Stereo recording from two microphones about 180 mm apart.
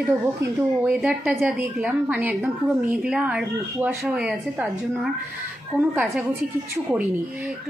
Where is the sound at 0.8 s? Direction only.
5° right (ahead or behind).